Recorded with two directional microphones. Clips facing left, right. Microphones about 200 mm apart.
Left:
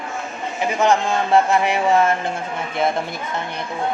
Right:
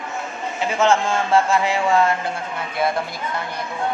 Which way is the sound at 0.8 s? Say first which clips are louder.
Even; 15° left (ahead or behind).